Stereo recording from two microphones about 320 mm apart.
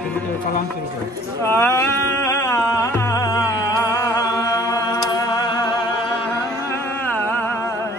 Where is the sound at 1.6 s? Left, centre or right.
Centre.